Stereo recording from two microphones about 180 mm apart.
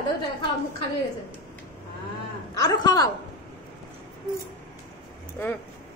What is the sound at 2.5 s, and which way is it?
Speech, 20° left (ahead or behind).